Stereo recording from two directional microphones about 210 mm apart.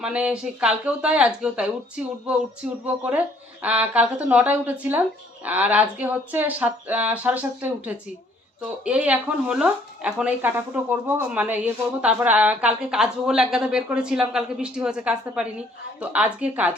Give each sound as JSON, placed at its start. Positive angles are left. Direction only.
{"t": 0.0, "sound": "speech", "side_deg": -5}